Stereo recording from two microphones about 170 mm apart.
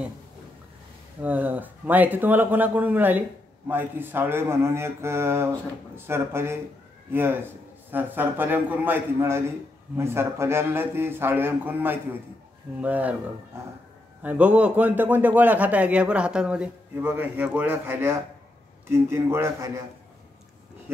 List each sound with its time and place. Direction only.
1.2 s a man's voice: 10° right (ahead or behind)
14.2 s speech: 10° right (ahead or behind)